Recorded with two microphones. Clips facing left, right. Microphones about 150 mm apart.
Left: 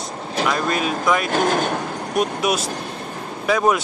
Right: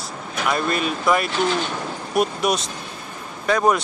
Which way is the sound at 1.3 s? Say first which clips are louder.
Left 3 dB; 50° left (ahead or behind).